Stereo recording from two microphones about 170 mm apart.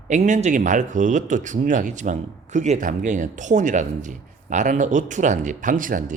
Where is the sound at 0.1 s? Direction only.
45° right (ahead or behind).